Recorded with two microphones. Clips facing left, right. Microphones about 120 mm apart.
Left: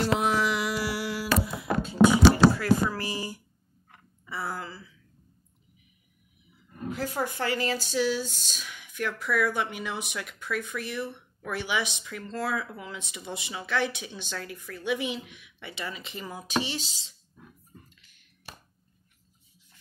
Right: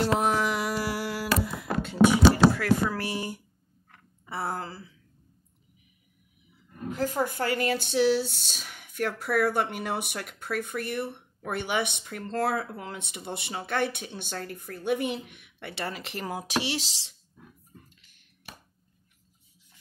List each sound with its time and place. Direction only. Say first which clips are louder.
0.0 s music: right 1 dB; 45° right (ahead or behind)
2.5 s speech: even; 65° right (ahead or behind); by 4.9 s 40° right (ahead or behind)
6.9 s speech: right 3 dB; 45° right (ahead or behind); by 17.1 s 80° right